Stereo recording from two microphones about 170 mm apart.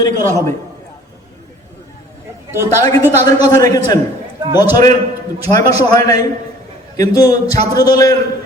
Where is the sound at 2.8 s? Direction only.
20° left (ahead or behind).